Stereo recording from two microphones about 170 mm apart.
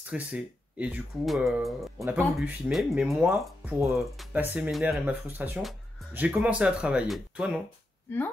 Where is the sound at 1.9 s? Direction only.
15° right (ahead or behind).